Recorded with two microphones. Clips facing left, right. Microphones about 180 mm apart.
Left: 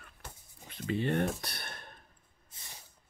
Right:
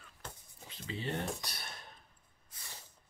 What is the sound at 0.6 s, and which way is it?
Speech, 55° left (ahead or behind).